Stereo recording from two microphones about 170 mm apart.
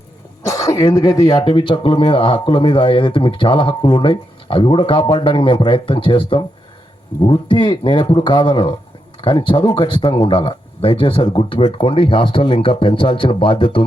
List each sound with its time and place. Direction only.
0.4 s speech: 15° left (ahead or behind)